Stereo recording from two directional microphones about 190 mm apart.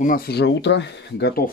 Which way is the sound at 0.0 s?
50° left (ahead or behind).